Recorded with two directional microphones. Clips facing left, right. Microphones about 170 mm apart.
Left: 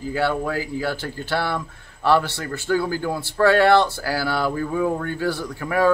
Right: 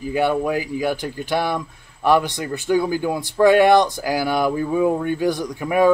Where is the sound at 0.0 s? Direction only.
15° right (ahead or behind).